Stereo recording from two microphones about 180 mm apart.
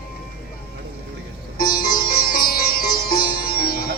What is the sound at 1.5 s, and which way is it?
Sitar, 55° left (ahead or behind).